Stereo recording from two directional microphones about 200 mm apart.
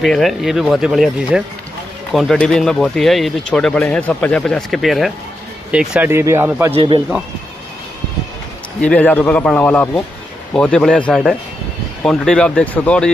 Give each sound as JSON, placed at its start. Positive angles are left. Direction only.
{"t": 0.0, "sound": "speech", "side_deg": 0}
{"t": 6.7, "sound": "a man's voice", "side_deg": -25}
{"t": 8.8, "sound": "a man's voice", "side_deg": 5}